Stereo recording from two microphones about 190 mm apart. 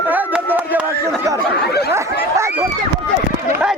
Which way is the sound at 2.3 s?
15° right (ahead or behind).